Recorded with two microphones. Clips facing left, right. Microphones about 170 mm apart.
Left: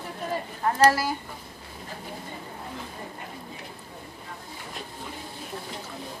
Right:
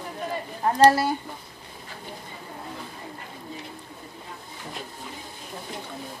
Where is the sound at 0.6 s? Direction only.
25° right (ahead or behind).